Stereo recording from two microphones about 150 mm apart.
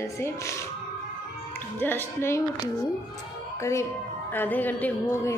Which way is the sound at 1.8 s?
15° left (ahead or behind).